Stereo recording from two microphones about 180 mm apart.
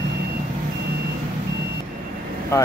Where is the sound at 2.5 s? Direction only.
15° left (ahead or behind).